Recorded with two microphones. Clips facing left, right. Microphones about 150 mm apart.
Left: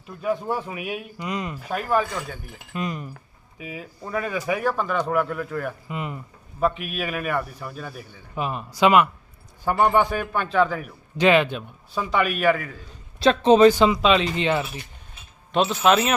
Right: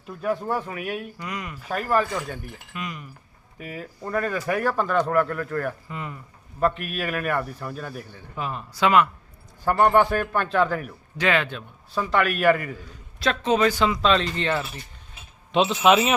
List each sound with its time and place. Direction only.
0.2 s speech: centre (ahead or behind)
1.2 s speech: 25° left (ahead or behind)
1.7 s speech: centre (ahead or behind)
2.7 s speech: 35° left (ahead or behind)
3.6 s speech: 5° left (ahead or behind)
5.9 s speech: 20° left (ahead or behind)
6.6 s speech: 5° left (ahead or behind)
8.4 s speech: 15° left (ahead or behind)
9.6 s speech: centre (ahead or behind)
11.2 s speech: 20° left (ahead or behind)
12.1 s speech: centre (ahead or behind)
13.1 s speech: 25° left (ahead or behind)
15.5 s speech: centre (ahead or behind)